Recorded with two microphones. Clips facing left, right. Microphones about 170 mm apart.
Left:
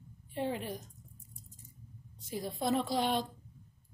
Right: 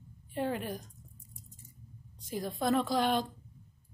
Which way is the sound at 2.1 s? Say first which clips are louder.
Right 2 dB; 25° left (ahead or behind).